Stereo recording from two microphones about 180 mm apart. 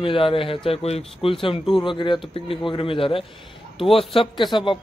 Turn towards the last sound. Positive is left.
turn(degrees=25)  # may be behind; listen again after turning